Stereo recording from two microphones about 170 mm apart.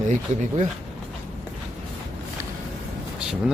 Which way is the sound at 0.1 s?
45° right (ahead or behind).